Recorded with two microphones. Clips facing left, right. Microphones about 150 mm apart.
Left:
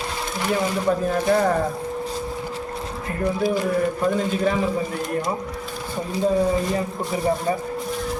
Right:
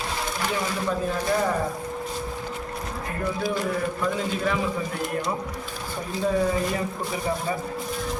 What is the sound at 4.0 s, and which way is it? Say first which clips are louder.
Speech: left 5 dB; 45° left (ahead or behind).